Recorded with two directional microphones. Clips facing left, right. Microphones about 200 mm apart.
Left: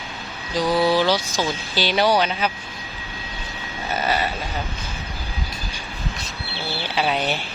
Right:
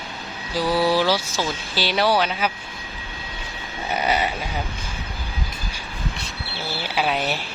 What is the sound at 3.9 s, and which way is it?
Speech, 15° right (ahead or behind).